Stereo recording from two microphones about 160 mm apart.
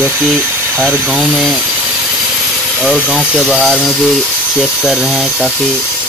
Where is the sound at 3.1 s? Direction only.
Centre (ahead or behind).